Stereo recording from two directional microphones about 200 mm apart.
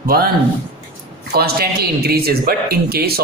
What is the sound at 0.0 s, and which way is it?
Speech, 50° right (ahead or behind).